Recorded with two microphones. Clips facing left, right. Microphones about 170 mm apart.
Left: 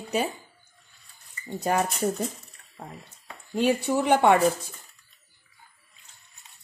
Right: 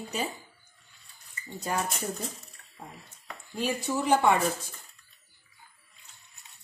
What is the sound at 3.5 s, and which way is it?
Speech, 65° left (ahead or behind).